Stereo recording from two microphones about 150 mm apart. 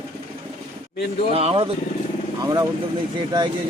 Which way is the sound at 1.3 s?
40° right (ahead or behind).